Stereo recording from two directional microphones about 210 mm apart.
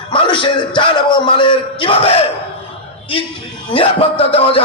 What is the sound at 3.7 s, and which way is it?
Speech, 25° left (ahead or behind).